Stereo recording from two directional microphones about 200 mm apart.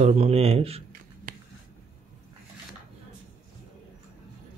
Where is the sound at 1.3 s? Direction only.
45° right (ahead or behind).